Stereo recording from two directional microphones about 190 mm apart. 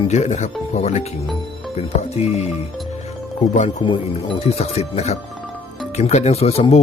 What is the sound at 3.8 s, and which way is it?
Speech, 25° left (ahead or behind).